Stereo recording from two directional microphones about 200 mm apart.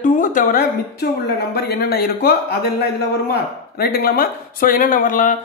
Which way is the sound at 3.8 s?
50° left (ahead or behind).